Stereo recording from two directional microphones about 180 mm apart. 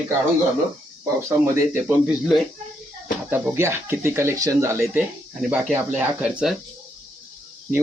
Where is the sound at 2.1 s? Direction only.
Centre (ahead or behind).